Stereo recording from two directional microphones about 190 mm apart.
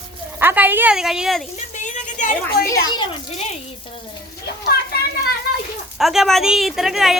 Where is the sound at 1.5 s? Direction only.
40° left (ahead or behind).